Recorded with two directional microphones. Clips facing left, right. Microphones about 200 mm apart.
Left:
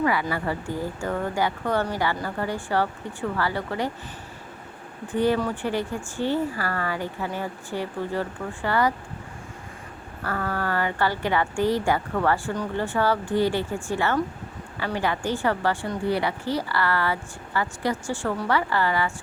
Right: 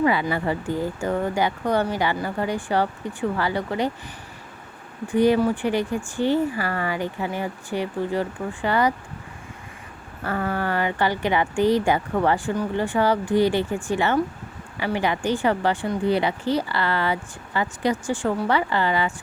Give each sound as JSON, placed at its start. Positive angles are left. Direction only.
{"t": 0.0, "sound": "speech", "side_deg": -20}
{"t": 5.0, "sound": "speech", "side_deg": -15}
{"t": 10.2, "sound": "speech", "side_deg": -20}